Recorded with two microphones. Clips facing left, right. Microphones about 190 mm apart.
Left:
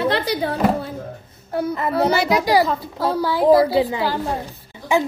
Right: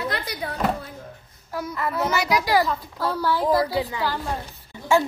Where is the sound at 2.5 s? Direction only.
15° left (ahead or behind).